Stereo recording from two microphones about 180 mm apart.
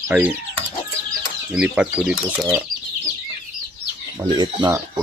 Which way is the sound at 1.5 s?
5° right (ahead or behind).